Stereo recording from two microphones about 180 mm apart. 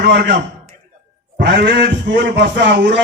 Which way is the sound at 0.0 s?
65° right (ahead or behind).